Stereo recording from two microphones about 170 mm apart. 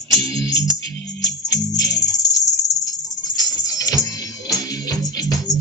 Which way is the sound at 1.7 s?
20° left (ahead or behind).